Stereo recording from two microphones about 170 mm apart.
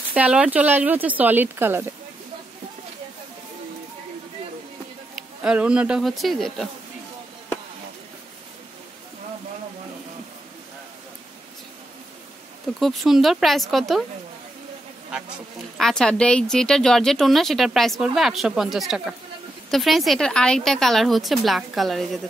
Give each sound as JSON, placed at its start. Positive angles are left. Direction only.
{"t": 0.1, "sound": "speech", "side_deg": -5}
{"t": 5.1, "sound": "speech", "side_deg": -5}
{"t": 12.7, "sound": "speech", "side_deg": 0}
{"t": 15.8, "sound": "speech", "side_deg": 5}